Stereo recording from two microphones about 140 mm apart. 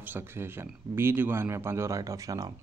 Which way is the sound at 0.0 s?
15° right (ahead or behind).